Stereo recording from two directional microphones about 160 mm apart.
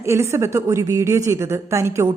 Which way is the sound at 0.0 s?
15° right (ahead or behind).